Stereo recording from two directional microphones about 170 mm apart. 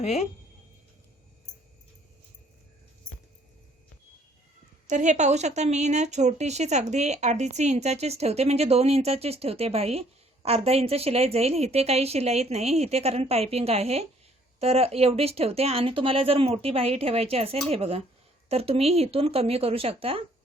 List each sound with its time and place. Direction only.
0.0 s speech: 40° left (ahead or behind)
4.9 s a woman's voice: 45° right (ahead or behind)